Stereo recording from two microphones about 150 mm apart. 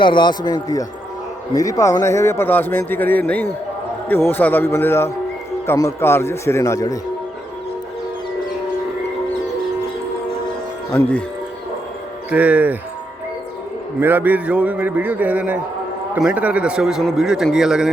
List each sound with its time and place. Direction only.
0.0 s a man's voice: 30° left (ahead or behind)
10.9 s a man's voice: 15° left (ahead or behind)
12.3 s a man's voice: 10° right (ahead or behind)
14.0 s a man's voice: 10° right (ahead or behind)